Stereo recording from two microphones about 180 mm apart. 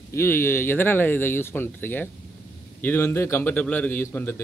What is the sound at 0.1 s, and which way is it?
A man's voice, 15° left (ahead or behind).